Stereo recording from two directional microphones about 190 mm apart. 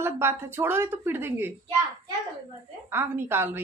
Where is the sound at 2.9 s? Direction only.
10° right (ahead or behind).